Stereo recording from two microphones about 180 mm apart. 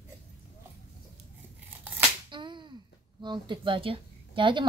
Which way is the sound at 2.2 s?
25° right (ahead or behind).